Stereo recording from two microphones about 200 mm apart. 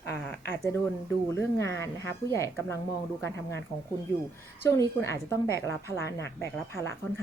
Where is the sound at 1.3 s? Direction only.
15° left (ahead or behind).